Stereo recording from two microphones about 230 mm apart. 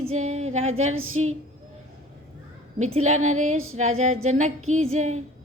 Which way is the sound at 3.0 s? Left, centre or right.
Right.